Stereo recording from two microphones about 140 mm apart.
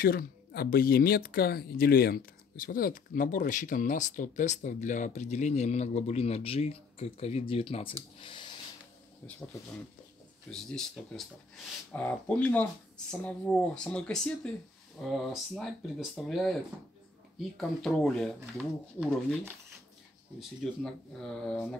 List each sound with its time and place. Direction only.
0.0 s speech: 90° left; by 7.9 s 40° left (ahead or behind)
8.2 s a sound: 35° left (ahead or behind)
10.5 s speech: 5° left (ahead or behind)
20.3 s speech: 5° left (ahead or behind)